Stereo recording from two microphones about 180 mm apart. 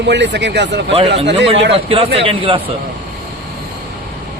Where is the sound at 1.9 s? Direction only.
30° right (ahead or behind).